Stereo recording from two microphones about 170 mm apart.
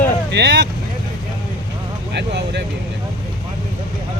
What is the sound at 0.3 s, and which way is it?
Speech, 80° right.